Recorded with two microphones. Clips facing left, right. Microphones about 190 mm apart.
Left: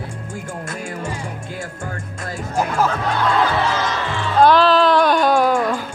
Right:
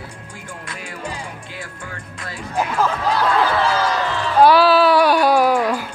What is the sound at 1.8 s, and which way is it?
Music, 45° left (ahead or behind).